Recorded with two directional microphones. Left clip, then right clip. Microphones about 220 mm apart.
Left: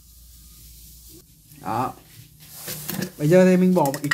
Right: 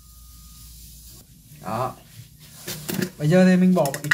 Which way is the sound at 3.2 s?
25° left (ahead or behind).